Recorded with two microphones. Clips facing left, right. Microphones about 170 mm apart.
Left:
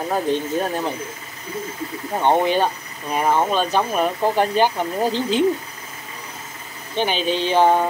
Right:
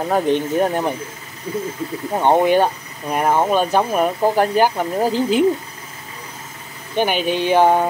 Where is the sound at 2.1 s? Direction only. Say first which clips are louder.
Right 3 dB; 15° right (ahead or behind).